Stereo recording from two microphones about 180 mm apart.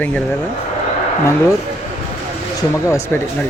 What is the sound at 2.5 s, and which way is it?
Speech, 15° left (ahead or behind).